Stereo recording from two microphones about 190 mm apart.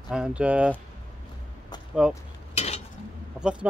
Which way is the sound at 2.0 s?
5° right (ahead or behind).